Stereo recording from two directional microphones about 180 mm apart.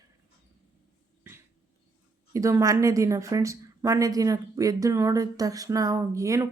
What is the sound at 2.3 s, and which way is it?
A woman's voice, 15° right (ahead or behind).